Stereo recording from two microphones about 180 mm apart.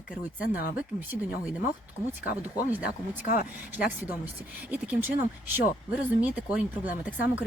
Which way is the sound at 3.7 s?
10° right (ahead or behind).